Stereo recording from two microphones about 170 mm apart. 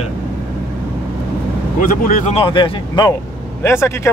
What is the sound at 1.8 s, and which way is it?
Speech, 50° left (ahead or behind).